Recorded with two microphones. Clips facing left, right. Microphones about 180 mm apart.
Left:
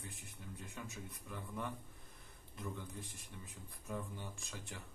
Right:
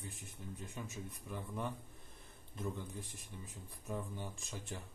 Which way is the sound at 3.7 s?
15° right (ahead or behind).